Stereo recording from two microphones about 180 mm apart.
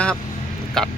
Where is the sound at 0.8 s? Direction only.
5° left (ahead or behind).